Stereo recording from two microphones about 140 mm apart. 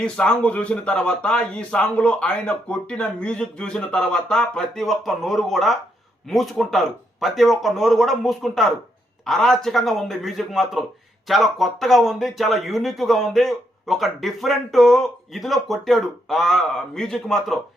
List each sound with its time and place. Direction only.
0.0 s speech: 5° left (ahead or behind)